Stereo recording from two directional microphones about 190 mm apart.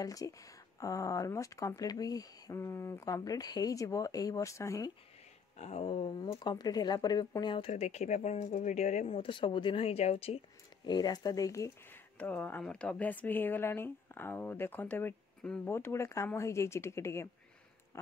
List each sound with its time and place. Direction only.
0.0 s speech: 20° left (ahead or behind)
5.6 s speech: 35° left (ahead or behind); by 17.3 s 15° left (ahead or behind)
17.9 s a sound: 15° left (ahead or behind)